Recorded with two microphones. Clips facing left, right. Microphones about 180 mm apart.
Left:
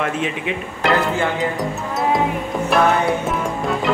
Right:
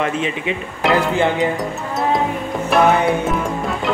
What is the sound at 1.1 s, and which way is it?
Speech, 20° right (ahead or behind).